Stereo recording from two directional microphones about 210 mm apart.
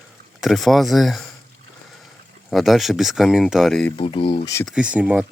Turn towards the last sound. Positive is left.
turn(degrees=-5)  # may be behind; listen again after turning